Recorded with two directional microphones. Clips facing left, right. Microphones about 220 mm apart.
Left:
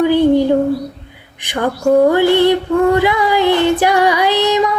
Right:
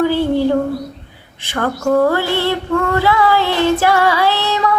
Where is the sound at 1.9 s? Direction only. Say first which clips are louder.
Left 5 dB; 15° left (ahead or behind).